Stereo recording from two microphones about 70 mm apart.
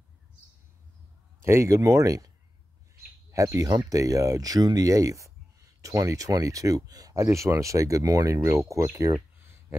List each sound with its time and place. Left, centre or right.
1.4 s speech: right
3.3 s bird: right
3.5 s speech: right
7.2 s speech: right